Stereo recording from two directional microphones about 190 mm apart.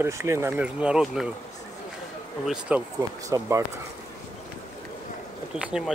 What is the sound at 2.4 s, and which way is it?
Speech, 5° right (ahead or behind).